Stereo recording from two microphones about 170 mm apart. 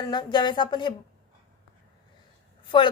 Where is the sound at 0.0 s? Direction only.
25° left (ahead or behind).